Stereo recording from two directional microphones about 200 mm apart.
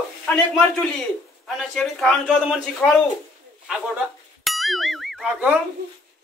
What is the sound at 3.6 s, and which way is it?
Bicycle bell, 5° right (ahead or behind).